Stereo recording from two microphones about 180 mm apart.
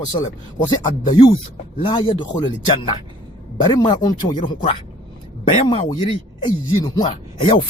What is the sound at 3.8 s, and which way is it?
Speech, 20° left (ahead or behind).